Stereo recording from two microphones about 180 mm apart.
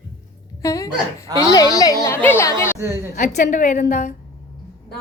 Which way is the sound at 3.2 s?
45° left (ahead or behind).